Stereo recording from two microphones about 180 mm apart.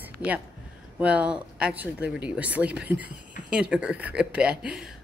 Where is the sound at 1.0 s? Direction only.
5° right (ahead or behind).